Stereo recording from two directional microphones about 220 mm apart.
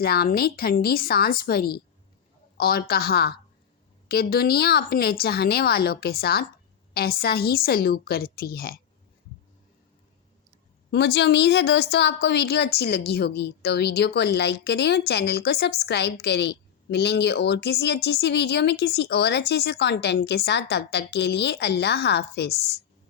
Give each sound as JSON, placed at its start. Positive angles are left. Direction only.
{"t": 0.0, "sound": "a woman's voice", "side_deg": 45}
{"t": 10.9, "sound": "a woman's voice", "side_deg": 50}